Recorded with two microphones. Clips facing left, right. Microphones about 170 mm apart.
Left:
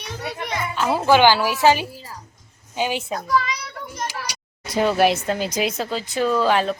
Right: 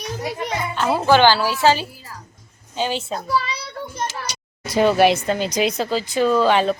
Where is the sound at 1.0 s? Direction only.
10° left (ahead or behind).